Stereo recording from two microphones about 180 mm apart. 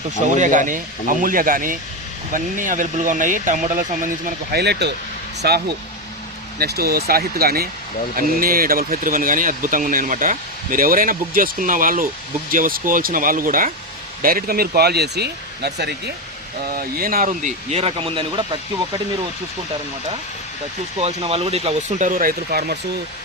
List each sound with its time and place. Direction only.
0.3 s speech: 45° right (ahead or behind)
4.5 s speech: 70° right (ahead or behind)
16.6 s speech: 55° right (ahead or behind); by 18.4 s 30° right (ahead or behind)
21.0 s speech: 35° right (ahead or behind); by 22.8 s 55° right (ahead or behind)